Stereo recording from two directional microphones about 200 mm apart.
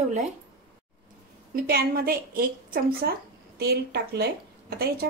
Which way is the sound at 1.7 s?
50° right (ahead or behind).